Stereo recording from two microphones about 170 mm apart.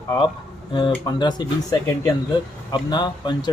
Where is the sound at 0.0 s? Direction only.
20° left (ahead or behind).